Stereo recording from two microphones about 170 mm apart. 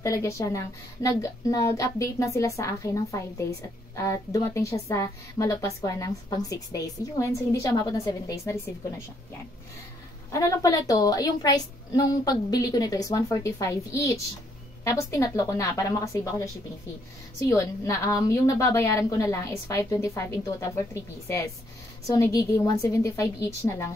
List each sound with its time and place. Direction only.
0.0 s a woman's voice: 15° left (ahead or behind)
10.3 s a woman's voice: 20° left (ahead or behind)
17.5 s a woman's voice: 15° left (ahead or behind)